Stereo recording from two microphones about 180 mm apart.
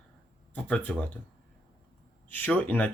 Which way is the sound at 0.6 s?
10° left (ahead or behind).